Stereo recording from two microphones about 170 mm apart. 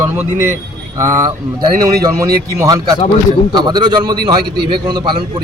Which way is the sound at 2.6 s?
20° right (ahead or behind).